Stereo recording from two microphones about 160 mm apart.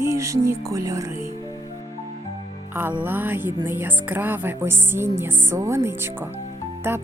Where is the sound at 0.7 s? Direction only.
20° right (ahead or behind).